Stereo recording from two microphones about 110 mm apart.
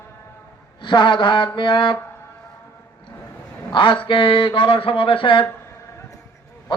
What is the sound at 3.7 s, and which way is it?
Speech, 50° left (ahead or behind).